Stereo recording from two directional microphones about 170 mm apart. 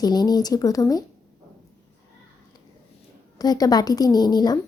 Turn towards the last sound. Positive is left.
turn(degrees=25)  # may be behind; listen again after turning